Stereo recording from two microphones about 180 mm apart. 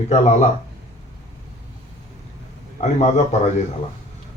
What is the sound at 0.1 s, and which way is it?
Speech, 40° left (ahead or behind).